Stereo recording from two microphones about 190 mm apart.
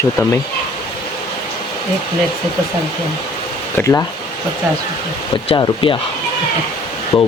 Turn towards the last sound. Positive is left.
turn(degrees=15)  # may be behind; listen again after turning